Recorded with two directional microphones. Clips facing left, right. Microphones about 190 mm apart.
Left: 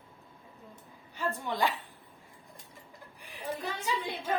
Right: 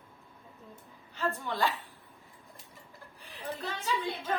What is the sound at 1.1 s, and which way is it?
Speech, 15° left (ahead or behind).